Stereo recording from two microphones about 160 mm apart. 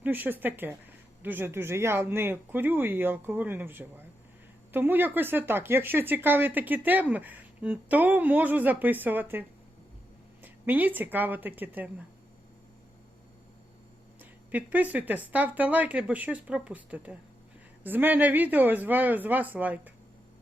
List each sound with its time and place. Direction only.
0.0 s speech: 10° right (ahead or behind)
14.2 s speech: 10° right (ahead or behind)